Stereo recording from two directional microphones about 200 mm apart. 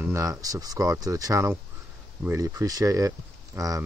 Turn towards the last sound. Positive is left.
turn(degrees=-15)  # may be behind; listen again after turning